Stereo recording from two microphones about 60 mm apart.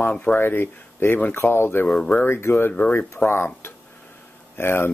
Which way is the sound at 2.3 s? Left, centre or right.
Left.